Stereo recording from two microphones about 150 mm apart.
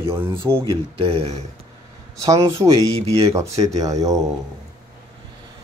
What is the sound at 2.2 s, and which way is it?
Speech, 20° right (ahead or behind).